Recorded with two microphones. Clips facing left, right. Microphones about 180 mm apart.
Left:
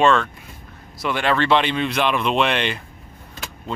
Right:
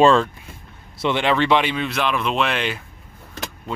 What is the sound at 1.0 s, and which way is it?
Speech, 20° right (ahead or behind).